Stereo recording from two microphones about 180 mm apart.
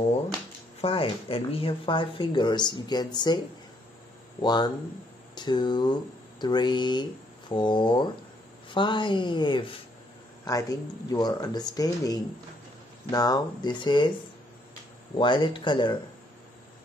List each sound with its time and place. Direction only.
0.7 s speech: 30° left (ahead or behind)
4.4 s speech: 25° left (ahead or behind)
15.1 s speech: 25° left (ahead or behind)